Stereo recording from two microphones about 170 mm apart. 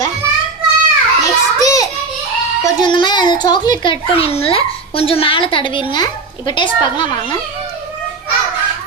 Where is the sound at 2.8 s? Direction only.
25° left (ahead or behind).